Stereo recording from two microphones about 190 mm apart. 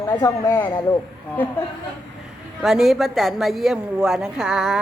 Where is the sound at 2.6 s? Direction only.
Centre (ahead or behind).